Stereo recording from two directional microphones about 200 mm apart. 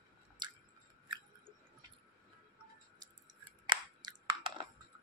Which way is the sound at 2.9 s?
20° right (ahead or behind).